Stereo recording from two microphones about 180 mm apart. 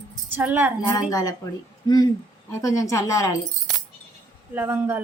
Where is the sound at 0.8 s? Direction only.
20° left (ahead or behind).